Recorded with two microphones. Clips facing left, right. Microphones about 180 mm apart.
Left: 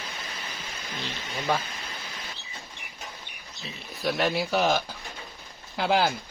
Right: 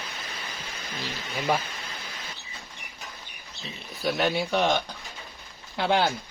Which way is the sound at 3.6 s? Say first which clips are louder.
Even; centre (ahead or behind).